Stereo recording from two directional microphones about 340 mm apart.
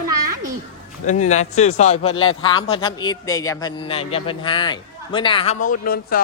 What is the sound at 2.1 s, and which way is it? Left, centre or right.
Speech, left.